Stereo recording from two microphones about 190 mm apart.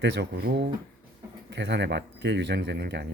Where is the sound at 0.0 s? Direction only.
60° right (ahead or behind).